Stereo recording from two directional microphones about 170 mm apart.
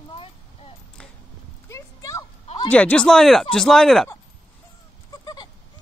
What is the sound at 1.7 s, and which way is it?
Clip-clop, 20° left (ahead or behind).